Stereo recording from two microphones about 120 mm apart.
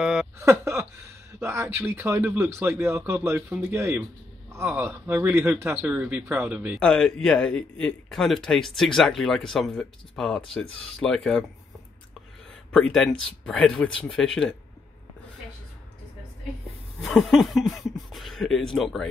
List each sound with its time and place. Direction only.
0.0 s a sound: 5° right (ahead or behind)
0.4 s speech: 25° right (ahead or behind)
6.8 s a man's voice: 5° left (ahead or behind)
12.7 s a man's voice: 5° left (ahead or behind)
17.1 s a man's voice: centre (ahead or behind)